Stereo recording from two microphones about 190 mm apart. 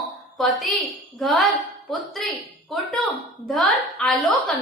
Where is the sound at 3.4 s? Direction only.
Centre (ahead or behind).